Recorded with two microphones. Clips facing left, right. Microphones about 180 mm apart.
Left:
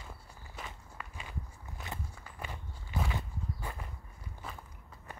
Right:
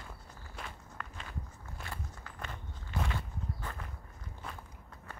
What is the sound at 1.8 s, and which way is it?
Walk, 20° left (ahead or behind).